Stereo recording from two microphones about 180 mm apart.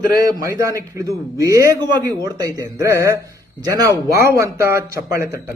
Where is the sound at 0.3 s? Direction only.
15° right (ahead or behind).